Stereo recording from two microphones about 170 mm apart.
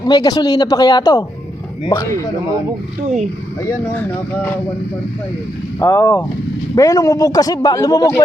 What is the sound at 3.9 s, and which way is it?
Speech, 10° left (ahead or behind).